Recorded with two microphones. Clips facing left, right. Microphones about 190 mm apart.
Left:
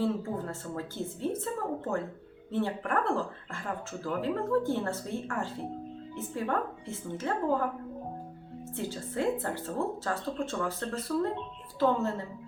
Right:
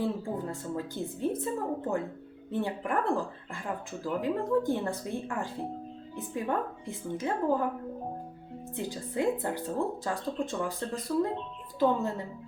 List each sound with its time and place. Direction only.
0.0 s speech: 15° right (ahead or behind)
8.7 s speech: 15° right (ahead or behind)